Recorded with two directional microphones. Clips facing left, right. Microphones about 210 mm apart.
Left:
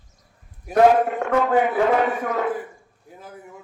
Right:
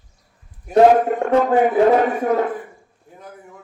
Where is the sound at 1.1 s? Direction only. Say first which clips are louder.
Right 4 dB; 40° right (ahead or behind).